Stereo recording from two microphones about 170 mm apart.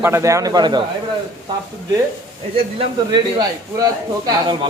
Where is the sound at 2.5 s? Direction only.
35° right (ahead or behind).